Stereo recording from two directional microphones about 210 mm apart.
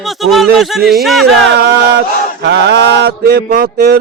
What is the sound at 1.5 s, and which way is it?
Mantra, 50° right (ahead or behind).